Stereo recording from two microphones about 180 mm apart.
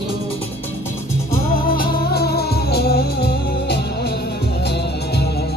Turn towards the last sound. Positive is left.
turn(degrees=60)  # may be behind; listen again after turning